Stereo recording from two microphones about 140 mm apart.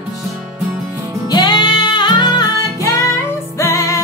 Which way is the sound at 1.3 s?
30° left (ahead or behind).